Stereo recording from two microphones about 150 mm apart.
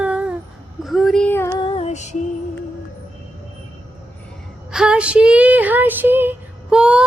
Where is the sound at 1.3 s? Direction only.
15° left (ahead or behind).